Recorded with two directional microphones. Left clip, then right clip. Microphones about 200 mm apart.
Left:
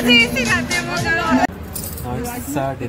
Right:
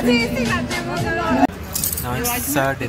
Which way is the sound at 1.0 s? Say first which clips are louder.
Left 1 dB; 20° right (ahead or behind).